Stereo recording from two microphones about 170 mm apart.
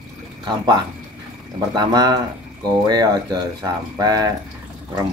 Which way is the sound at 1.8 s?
25° right (ahead or behind).